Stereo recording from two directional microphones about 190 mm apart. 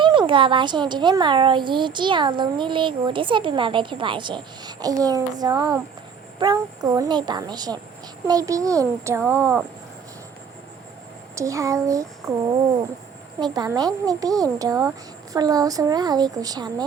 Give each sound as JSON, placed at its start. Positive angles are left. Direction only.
{"t": 0.0, "sound": "a child's voice", "side_deg": -25}
{"t": 11.3, "sound": "a child's voice", "side_deg": -15}